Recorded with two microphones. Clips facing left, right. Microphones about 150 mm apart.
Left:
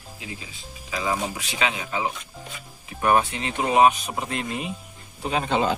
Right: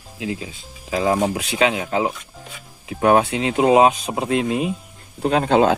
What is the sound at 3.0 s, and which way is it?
Speech, 90° right.